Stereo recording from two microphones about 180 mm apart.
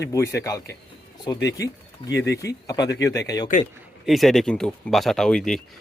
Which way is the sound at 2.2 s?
15° left (ahead or behind).